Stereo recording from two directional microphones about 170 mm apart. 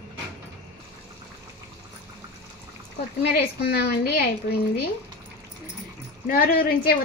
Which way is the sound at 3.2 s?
75° left (ahead or behind).